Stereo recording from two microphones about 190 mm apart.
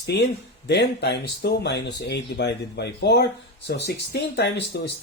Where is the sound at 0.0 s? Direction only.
60° left (ahead or behind).